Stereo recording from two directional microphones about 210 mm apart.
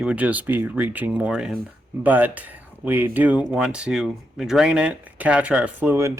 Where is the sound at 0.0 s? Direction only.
5° right (ahead or behind).